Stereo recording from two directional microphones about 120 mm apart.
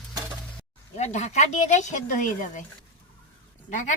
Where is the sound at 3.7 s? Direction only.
90° left.